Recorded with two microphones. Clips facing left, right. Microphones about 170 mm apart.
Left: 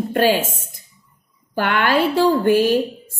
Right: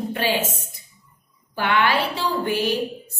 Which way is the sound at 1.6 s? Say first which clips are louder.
Left 3 dB; 50° left (ahead or behind).